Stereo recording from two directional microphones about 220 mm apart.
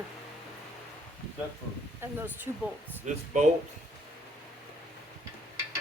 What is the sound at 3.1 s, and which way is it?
Speech, 35° right (ahead or behind).